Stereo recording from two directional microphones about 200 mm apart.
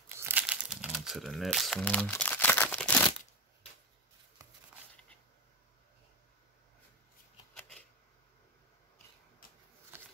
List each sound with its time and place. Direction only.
0.1 s crumpling: 10° right (ahead or behind); by 2.9 s 10° left (ahead or behind)
9.4 s shuffling cards: 45° left (ahead or behind)